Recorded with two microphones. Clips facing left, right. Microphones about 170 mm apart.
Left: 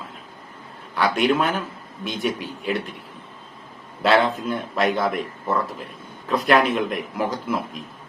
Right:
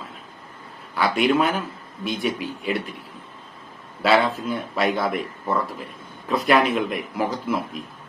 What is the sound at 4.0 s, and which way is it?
A man's voice, 5° right (ahead or behind).